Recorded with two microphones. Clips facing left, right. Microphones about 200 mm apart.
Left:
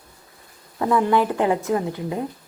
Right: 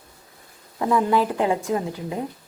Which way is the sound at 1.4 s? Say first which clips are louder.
Left 2 dB; 20° right (ahead or behind).